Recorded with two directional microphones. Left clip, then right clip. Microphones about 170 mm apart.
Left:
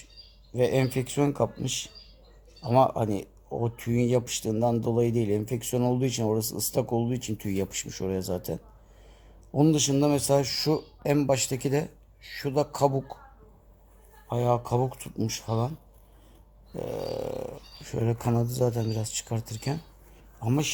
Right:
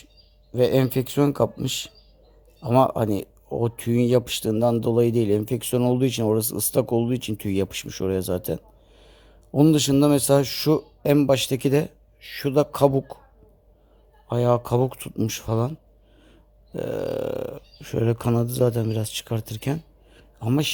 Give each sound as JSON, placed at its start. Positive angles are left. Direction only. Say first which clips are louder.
{"t": 0.5, "sound": "speech", "louder": "right 5 dB", "side_deg": -45}
{"t": 14.3, "sound": "speech", "louder": "right 5 dB", "side_deg": -50}
{"t": 16.7, "sound": "speech", "louder": "right 5 dB", "side_deg": -50}